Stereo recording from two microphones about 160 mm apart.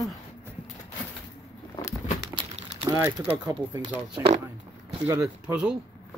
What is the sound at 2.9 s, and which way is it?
Speech, 15° right (ahead or behind).